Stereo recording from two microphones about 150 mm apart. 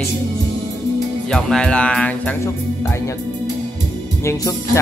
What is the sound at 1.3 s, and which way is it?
Speech, 5° left (ahead or behind).